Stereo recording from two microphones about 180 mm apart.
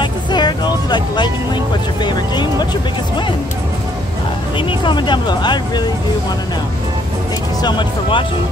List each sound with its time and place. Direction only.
0.0 s music: 25° left (ahead or behind)
4.6 s speech: 25° left (ahead or behind)
7.6 s speech: 25° left (ahead or behind)